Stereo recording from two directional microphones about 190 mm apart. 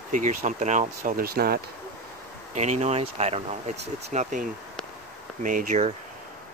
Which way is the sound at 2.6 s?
35° right (ahead or behind).